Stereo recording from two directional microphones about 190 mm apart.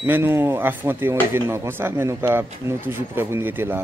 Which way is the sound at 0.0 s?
10° right (ahead or behind).